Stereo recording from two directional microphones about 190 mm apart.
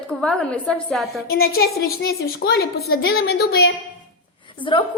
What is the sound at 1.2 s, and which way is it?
A woman's voice, 55° left (ahead or behind).